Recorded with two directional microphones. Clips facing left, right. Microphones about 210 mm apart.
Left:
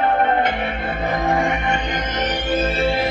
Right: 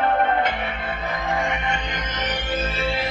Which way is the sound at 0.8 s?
50° left (ahead or behind).